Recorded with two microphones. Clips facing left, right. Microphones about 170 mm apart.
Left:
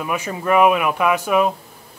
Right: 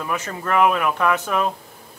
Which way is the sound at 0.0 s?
10° left (ahead or behind).